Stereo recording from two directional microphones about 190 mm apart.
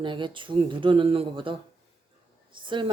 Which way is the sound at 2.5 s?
25° right (ahead or behind).